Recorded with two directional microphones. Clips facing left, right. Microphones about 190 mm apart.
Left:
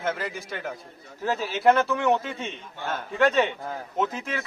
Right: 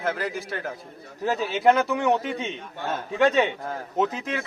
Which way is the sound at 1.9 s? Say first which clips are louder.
Right 1 dB; 15° right (ahead or behind).